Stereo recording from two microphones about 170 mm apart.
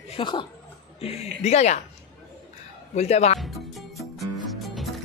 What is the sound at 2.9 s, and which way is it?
Speech, 40° left (ahead or behind).